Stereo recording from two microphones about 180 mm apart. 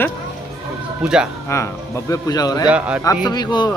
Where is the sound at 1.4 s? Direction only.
15° left (ahead or behind).